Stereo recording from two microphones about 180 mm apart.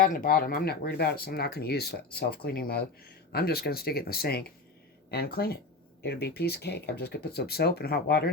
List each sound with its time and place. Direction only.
0.0 s speech: 50° left (ahead or behind)